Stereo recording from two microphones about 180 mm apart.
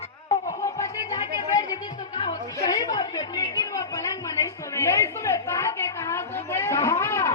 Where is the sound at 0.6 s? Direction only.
20° left (ahead or behind).